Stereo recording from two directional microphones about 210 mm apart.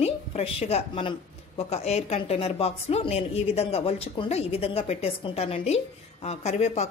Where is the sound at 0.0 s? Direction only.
30° left (ahead or behind).